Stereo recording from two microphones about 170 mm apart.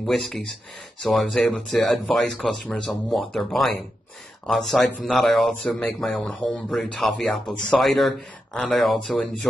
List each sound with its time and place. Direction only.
0.0 s speech: centre (ahead or behind)